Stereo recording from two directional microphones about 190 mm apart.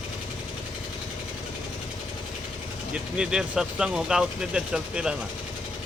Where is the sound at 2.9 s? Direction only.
5° right (ahead or behind).